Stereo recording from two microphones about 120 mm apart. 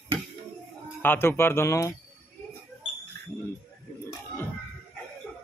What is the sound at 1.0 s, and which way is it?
Speech, 20° left (ahead or behind).